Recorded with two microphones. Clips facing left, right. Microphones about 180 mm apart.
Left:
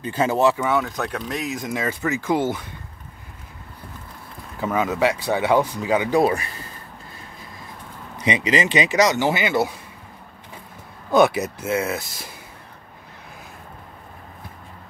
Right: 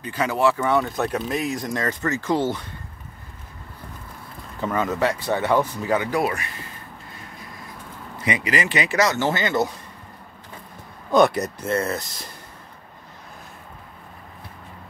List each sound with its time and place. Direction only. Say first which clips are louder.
0.0 s speech: left 2 dB; 25° left (ahead or behind)
0.7 s speech: right 1 dB; centre (ahead or behind)
4.6 s speech: left 1 dB; 10° left (ahead or behind)
6.1 s speech: left 5 dB; 30° left (ahead or behind)
8.2 s speech: left 3 dB; 20° left (ahead or behind)
11.1 s speech: left 1 dB; 5° left (ahead or behind)